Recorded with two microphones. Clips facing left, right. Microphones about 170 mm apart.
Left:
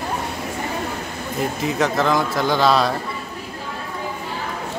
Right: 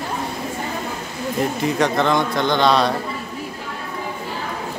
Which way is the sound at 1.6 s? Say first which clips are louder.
Even; centre (ahead or behind).